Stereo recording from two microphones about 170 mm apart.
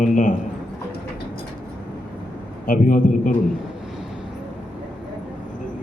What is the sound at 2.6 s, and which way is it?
Speech, 50° left (ahead or behind).